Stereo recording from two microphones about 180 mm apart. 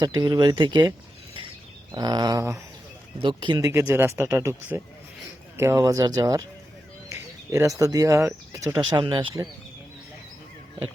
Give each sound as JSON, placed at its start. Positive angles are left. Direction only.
{"t": 0.0, "sound": "speech", "side_deg": -25}
{"t": 3.2, "sound": "speech", "side_deg": -25}
{"t": 3.7, "sound": "speech", "side_deg": -15}
{"t": 7.1, "sound": "a sound", "side_deg": -15}
{"t": 7.8, "sound": "speech", "side_deg": -20}